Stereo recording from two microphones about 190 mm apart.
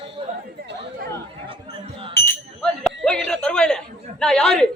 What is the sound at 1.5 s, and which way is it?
Basketball bounce, 30° right (ahead or behind).